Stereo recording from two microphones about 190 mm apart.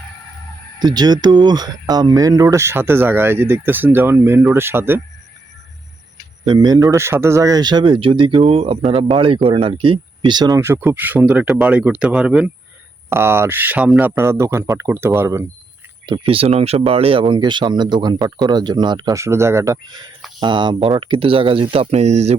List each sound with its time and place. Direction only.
0.8 s speech: 20° right (ahead or behind)
6.4 s speech: 20° right (ahead or behind)
16.0 s speech: 25° right (ahead or behind)